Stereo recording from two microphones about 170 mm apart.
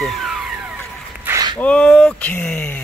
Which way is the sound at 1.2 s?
25° right (ahead or behind).